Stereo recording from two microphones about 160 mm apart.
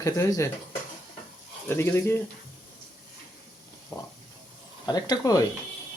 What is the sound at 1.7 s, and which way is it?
Speech, 15° left (ahead or behind).